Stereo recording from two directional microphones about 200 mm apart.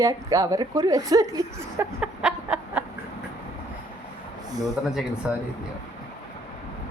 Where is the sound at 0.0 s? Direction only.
15° right (ahead or behind).